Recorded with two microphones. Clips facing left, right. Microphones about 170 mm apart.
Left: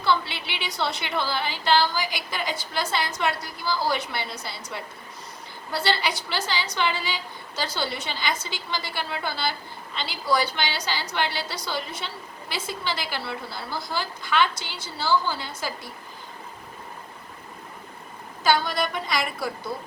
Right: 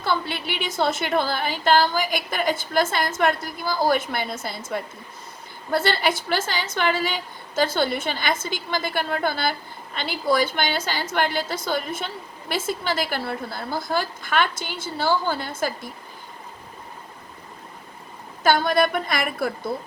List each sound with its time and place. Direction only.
0.0 s a woman's voice: 50° right (ahead or behind)
18.4 s a woman's voice: 50° right (ahead or behind)